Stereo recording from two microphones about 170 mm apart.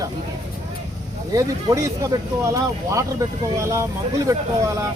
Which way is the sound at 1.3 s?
20° right (ahead or behind).